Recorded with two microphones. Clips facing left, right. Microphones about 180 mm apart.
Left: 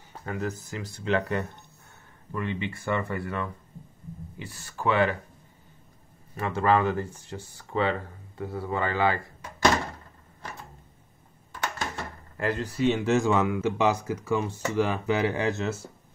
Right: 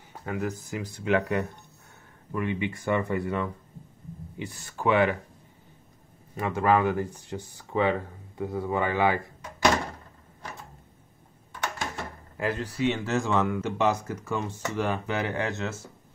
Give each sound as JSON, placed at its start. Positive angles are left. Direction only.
{"t": 0.1, "sound": "speech", "side_deg": -10}
{"t": 6.3, "sound": "speech", "side_deg": -15}
{"t": 12.4, "sound": "speech", "side_deg": -5}
{"t": 12.9, "sound": "speech", "side_deg": 15}